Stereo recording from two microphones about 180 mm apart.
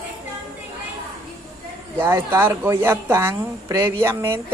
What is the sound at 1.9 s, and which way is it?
Speech, 15° right (ahead or behind).